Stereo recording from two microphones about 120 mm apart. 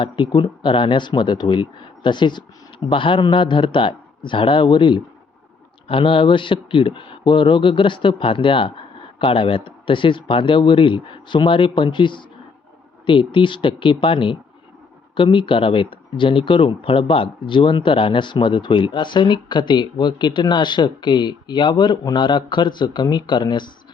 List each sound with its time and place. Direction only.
0.4 s speech: 45° left (ahead or behind)